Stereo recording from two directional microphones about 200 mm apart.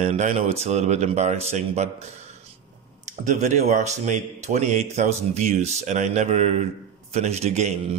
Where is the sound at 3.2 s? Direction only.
35° right (ahead or behind).